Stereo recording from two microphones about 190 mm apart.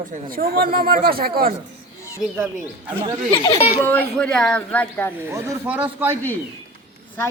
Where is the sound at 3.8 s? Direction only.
5° left (ahead or behind).